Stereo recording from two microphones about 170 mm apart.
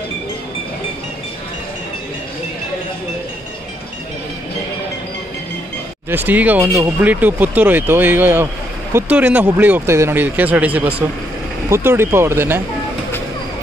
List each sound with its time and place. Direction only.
6.0 s speech: 10° right (ahead or behind)